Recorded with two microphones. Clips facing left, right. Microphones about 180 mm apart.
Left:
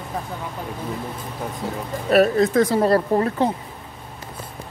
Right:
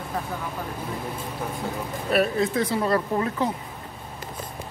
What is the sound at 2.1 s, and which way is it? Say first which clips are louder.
Speech: left 6 dB; 40° left (ahead or behind).